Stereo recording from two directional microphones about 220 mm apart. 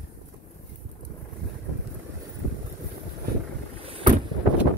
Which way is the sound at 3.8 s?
25° right (ahead or behind).